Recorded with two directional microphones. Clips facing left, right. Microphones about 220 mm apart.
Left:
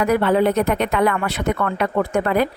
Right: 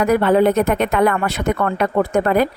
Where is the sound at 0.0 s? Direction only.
45° right (ahead or behind).